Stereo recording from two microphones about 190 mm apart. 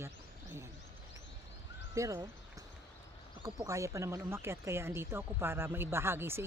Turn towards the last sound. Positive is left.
turn(degrees=-10)  # may be behind; listen again after turning